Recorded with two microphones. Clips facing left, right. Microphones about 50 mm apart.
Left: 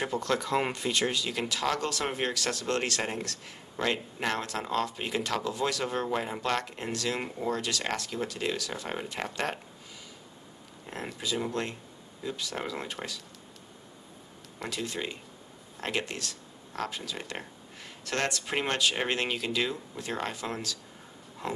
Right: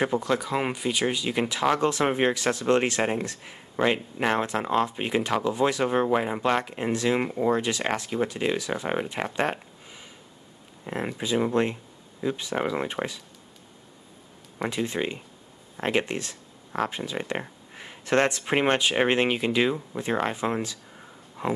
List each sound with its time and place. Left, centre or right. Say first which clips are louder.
0.0 s speech: right 6 dB; right
0.3 s speech: right 2 dB; centre
14.6 s speech: right 7 dB; right